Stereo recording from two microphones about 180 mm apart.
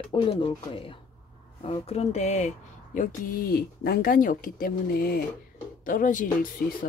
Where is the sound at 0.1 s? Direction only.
30° left (ahead or behind).